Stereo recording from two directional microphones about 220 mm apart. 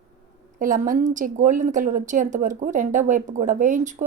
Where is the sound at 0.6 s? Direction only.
35° right (ahead or behind).